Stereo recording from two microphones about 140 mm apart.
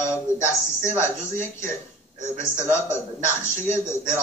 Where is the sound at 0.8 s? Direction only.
20° left (ahead or behind).